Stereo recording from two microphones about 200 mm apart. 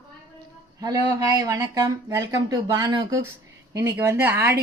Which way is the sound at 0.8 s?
20° right (ahead or behind).